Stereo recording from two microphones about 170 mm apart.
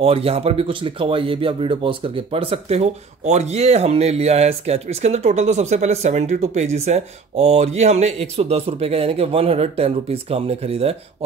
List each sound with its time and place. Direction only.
0.0 s speech: 35° right (ahead or behind)